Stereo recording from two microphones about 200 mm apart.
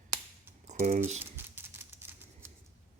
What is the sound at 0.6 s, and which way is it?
Speech, 35° right (ahead or behind).